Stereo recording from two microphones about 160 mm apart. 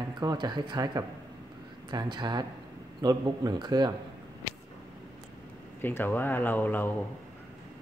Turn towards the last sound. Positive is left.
turn(degrees=10)  # may be behind; listen again after turning